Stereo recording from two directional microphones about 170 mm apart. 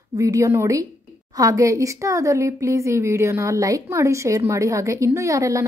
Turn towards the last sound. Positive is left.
turn(degrees=-20)  # may be behind; listen again after turning